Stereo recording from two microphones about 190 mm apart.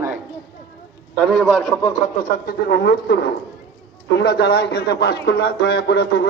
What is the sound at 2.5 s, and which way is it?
A man's voice, 60° left (ahead or behind).